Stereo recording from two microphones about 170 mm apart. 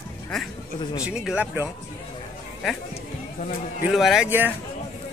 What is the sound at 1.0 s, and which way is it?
Speech, 5° right (ahead or behind).